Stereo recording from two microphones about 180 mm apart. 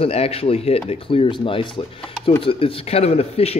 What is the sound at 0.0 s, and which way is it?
A man's voice, 35° left (ahead or behind).